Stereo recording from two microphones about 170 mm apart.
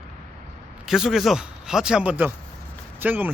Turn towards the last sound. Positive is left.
turn(degrees=-10)  # may be behind; listen again after turning